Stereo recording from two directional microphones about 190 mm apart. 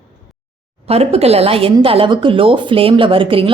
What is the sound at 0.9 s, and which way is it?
A woman's voice, 35° right (ahead or behind).